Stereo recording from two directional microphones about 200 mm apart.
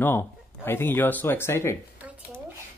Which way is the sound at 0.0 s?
10° left (ahead or behind).